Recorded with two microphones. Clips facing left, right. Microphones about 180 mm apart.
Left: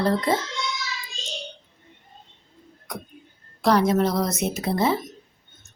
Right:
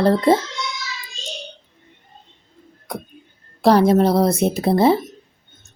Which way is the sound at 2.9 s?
30° right (ahead or behind).